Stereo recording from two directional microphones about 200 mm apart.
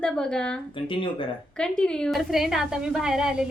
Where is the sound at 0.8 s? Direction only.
25° left (ahead or behind).